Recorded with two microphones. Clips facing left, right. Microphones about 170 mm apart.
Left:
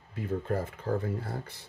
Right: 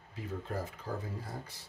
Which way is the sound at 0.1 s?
60° left (ahead or behind).